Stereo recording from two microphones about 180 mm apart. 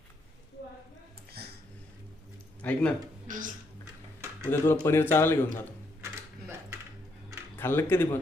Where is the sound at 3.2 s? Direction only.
45° right (ahead or behind).